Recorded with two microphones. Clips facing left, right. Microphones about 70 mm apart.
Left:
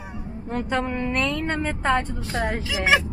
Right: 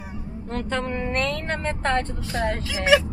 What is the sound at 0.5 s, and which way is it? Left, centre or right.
Speech, centre.